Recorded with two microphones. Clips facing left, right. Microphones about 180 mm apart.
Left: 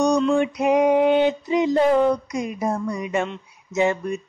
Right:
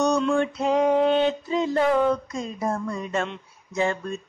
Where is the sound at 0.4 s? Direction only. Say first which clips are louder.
Left 3 dB; 15° left (ahead or behind).